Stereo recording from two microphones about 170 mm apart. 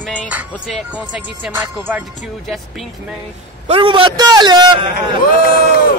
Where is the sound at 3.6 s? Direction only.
30° right (ahead or behind).